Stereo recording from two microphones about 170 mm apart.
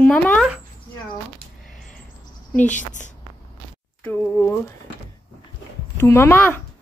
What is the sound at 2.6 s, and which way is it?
Speech, 45° left (ahead or behind).